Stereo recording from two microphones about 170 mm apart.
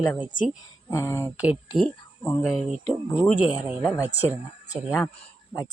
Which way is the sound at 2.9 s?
Centre (ahead or behind).